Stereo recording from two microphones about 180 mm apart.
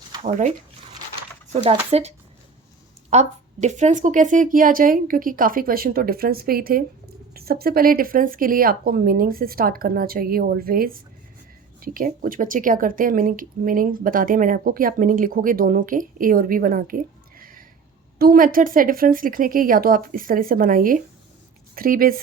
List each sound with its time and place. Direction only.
0.1 s speech: 35° right (ahead or behind)
1.9 s speech: 35° right (ahead or behind); by 22.1 s 50° right (ahead or behind)